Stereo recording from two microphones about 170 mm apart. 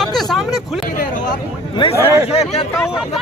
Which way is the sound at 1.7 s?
35° left (ahead or behind).